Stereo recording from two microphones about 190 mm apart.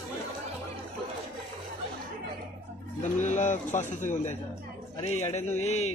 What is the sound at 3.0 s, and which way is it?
Speech, 40° left (ahead or behind).